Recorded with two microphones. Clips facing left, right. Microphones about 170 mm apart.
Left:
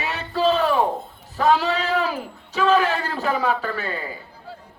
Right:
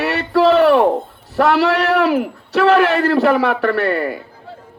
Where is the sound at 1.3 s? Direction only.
75° right (ahead or behind).